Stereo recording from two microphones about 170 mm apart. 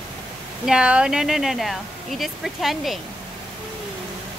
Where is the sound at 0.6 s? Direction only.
5° right (ahead or behind).